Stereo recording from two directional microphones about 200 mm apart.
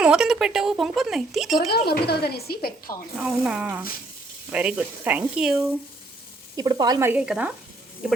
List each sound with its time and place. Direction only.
0.0 s speech: 5° right (ahead or behind)
1.9 s speech: 55° left (ahead or behind)
3.2 s speech: 5° right (ahead or behind)
6.6 s speech: 20° right (ahead or behind); by 8.2 s 5° right (ahead or behind)